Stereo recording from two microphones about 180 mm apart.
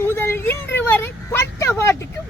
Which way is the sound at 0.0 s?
15° left (ahead or behind).